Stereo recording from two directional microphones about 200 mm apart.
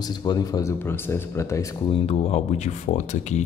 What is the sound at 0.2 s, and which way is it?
Speech, 20° left (ahead or behind).